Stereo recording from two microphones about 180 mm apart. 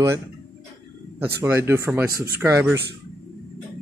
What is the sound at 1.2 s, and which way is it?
Speech, 15° right (ahead or behind).